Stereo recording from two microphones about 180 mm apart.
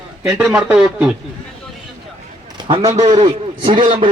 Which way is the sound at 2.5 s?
25° right (ahead or behind).